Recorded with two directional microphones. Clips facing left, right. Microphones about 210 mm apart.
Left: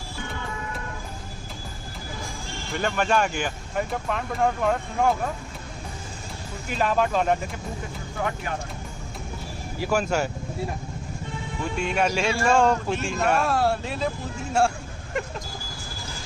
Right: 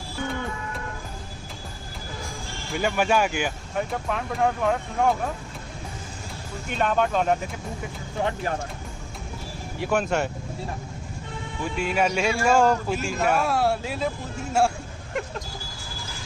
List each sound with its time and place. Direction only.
2.7 s speech: 10° right (ahead or behind)
6.7 s speech: centre (ahead or behind)
8.2 s speech: 25° right (ahead or behind)
9.8 s speech: centre (ahead or behind)
11.7 s speech: 5° right (ahead or behind)